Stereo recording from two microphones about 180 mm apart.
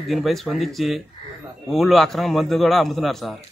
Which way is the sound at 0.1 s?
Centre (ahead or behind).